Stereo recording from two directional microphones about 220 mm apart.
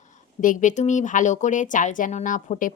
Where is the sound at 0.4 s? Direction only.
35° left (ahead or behind).